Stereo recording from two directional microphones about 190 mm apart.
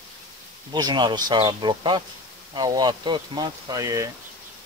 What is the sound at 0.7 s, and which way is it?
Speech, 25° right (ahead or behind).